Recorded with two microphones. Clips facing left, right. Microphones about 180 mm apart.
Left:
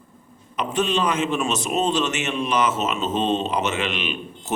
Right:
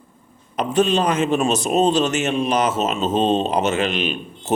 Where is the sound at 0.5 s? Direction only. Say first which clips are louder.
Right 5 dB; 40° right (ahead or behind).